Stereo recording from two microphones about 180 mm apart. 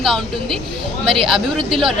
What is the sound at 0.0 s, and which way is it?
Speech, centre (ahead or behind).